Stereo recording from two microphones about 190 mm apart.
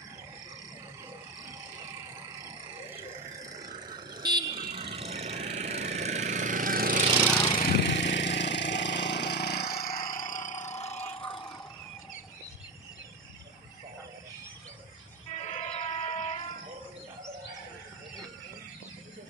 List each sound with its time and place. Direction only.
4.2 s vehicle: 25° right (ahead or behind); by 7.1 s 45° right (ahead or behind)
7.5 s a sound: 55° left (ahead or behind); by 11.5 s 25° left (ahead or behind)
15.5 s music: 35° left (ahead or behind)